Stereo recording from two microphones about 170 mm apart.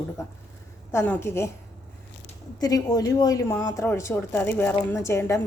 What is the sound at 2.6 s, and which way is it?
A woman's voice, 20° left (ahead or behind).